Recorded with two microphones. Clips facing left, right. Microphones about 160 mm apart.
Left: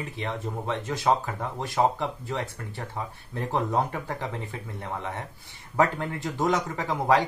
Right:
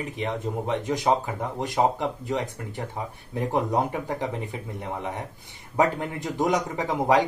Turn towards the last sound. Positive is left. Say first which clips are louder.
# right 2 dB
turn(degrees=-20)  # may be behind; listen again after turning